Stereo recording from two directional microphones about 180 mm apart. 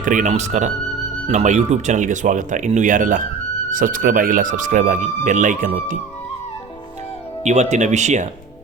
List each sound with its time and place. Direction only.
0.0 s speech: 45° right (ahead or behind)
7.4 s speech: 40° right (ahead or behind)